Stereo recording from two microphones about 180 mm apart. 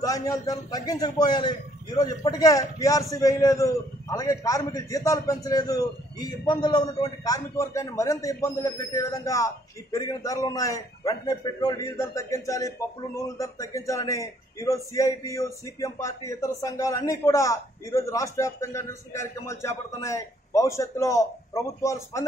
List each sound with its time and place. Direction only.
0.0 s a man's voice: 20° left (ahead or behind)